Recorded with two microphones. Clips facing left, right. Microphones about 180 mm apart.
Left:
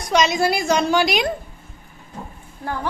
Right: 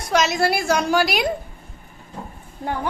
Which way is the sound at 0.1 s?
5° right (ahead or behind).